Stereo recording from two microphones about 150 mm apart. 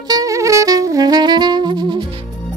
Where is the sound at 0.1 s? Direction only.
20° right (ahead or behind).